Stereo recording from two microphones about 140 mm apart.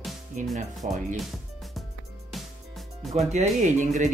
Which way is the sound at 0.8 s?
55° right (ahead or behind).